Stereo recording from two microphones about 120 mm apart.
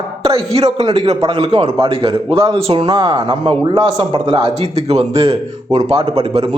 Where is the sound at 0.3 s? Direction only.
55° right (ahead or behind).